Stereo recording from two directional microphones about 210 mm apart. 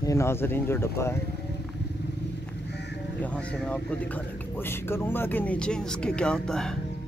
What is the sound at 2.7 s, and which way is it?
Crow, 55° left (ahead or behind).